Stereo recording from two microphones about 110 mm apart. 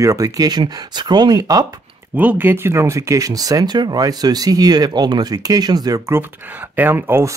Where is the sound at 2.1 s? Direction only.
15° right (ahead or behind).